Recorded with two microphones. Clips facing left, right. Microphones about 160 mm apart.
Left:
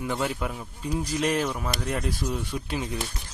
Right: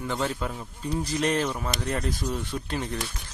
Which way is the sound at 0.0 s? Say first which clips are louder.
Left 1 dB; 10° left (ahead or behind).